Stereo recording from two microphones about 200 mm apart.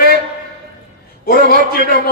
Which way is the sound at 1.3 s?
50° left (ahead or behind).